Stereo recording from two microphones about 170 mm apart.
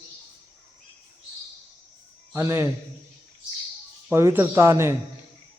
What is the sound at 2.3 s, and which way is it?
Speech, 15° right (ahead or behind).